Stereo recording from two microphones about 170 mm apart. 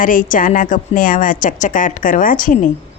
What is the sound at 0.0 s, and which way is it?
A woman's voice, 50° left (ahead or behind).